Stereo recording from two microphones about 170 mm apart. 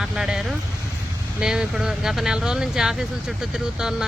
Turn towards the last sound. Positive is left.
turn(degrees=-5)  # may be behind; listen again after turning